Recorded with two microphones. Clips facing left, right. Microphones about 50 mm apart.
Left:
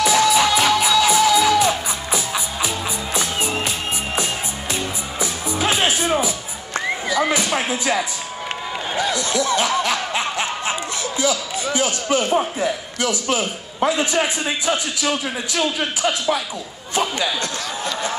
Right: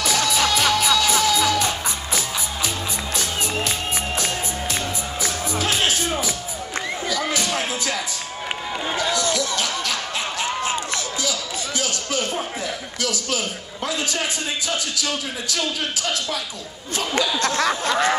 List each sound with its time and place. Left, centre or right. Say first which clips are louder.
0.0 s music: left 5 dB; centre
8.9 s a sound: left 2 dB; centre
12.4 s a man's voice: left 6 dB; left